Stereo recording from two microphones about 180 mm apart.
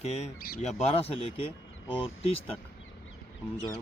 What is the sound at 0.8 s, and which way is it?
Speech, 35° left (ahead or behind).